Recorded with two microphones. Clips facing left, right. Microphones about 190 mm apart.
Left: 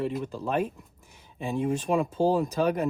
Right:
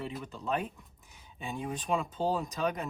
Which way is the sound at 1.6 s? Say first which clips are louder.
Left 7 dB; 55° left (ahead or behind).